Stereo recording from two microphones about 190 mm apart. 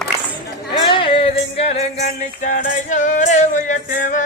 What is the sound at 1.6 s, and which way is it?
Music, 35° left (ahead or behind).